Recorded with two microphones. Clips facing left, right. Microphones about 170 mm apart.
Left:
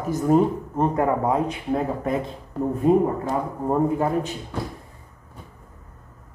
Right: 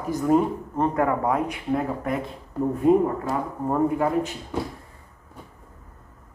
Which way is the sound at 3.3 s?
20° left (ahead or behind).